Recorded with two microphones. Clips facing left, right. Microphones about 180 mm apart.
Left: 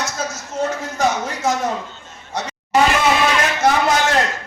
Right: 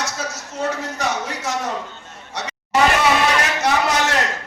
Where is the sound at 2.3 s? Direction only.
70° right (ahead or behind).